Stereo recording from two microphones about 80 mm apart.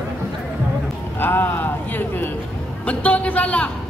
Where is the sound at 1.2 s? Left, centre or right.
Left.